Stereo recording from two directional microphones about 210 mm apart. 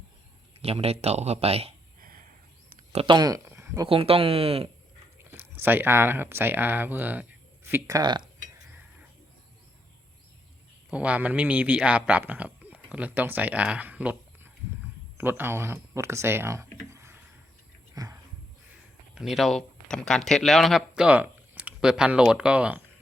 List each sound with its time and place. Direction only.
0.6 s speech: 30° right (ahead or behind)
2.0 s a sound: 45° right (ahead or behind)
2.9 s speech: 25° right (ahead or behind)
3.8 s speech: 25° right (ahead or behind)
5.1 s speech: 10° right (ahead or behind)
10.9 s speech: 5° right (ahead or behind)
16.9 s a sound: 15° right (ahead or behind)
19.1 s speech: centre (ahead or behind)